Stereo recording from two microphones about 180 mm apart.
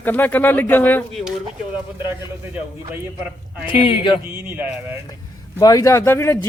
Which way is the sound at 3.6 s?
25° left (ahead or behind).